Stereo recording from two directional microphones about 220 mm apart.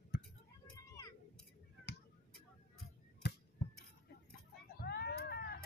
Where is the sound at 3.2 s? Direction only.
50° left (ahead or behind).